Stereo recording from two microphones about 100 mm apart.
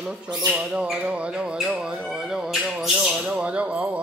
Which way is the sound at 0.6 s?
10° right (ahead or behind).